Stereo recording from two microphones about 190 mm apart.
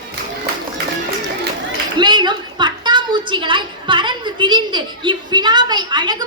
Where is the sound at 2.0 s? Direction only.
25° right (ahead or behind).